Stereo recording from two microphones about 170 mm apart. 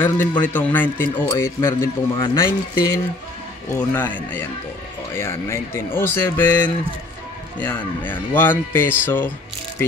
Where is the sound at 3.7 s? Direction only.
15° left (ahead or behind).